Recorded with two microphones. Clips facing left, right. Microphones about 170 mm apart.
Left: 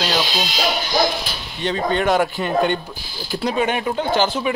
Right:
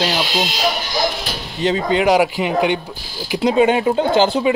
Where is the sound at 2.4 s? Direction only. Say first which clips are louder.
Right 1 dB; 80° right.